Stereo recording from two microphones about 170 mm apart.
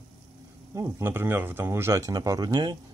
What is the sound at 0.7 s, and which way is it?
Speech, 15° right (ahead or behind).